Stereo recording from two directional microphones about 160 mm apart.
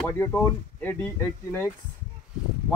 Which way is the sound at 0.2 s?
15° left (ahead or behind).